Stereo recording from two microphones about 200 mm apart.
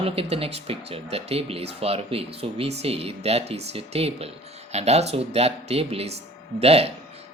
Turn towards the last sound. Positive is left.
turn(degrees=-30)  # may be behind; listen again after turning